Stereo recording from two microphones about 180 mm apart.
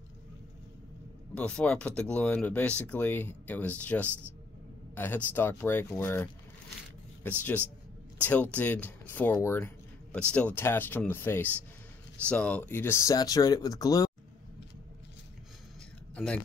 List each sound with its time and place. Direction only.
1.3 s speech: 5° left (ahead or behind)